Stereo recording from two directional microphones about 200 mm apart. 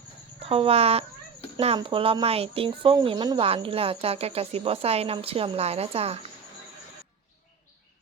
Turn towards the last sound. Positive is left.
turn(degrees=-30)  # may be behind; listen again after turning